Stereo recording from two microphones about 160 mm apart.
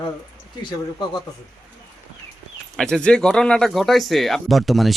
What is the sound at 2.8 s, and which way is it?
Speech, 5° left (ahead or behind).